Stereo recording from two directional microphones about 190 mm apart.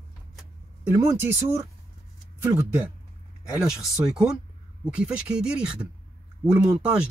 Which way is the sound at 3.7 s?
5° right (ahead or behind).